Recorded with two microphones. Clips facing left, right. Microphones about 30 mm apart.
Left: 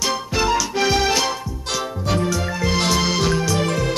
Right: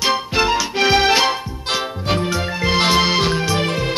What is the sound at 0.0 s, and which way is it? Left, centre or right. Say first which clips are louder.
Music: right 3 dB; right.